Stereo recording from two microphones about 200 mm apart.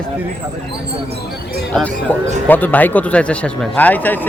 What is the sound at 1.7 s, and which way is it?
A man's voice, 5° left (ahead or behind).